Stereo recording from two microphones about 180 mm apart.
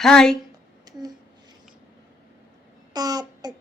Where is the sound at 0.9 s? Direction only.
20° right (ahead or behind).